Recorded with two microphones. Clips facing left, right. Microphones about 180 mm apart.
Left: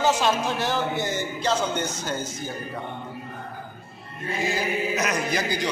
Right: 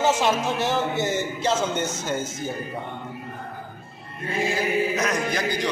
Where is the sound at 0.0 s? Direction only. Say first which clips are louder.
Right 1 dB; 25° right (ahead or behind).